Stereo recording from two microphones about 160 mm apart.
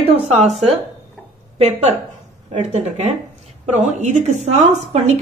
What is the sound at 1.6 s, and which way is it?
Speech, 40° right (ahead or behind).